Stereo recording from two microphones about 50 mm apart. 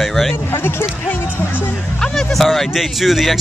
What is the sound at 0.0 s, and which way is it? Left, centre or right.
Speech, centre.